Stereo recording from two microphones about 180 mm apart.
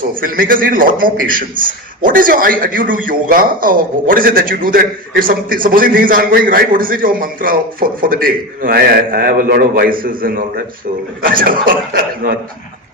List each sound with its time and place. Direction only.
0.1 s a man's voice: 50° right (ahead or behind)